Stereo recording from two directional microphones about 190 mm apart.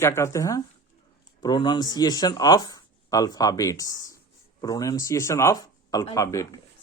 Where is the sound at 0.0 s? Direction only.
15° left (ahead or behind).